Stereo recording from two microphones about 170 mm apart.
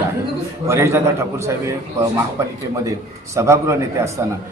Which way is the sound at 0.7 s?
15° right (ahead or behind).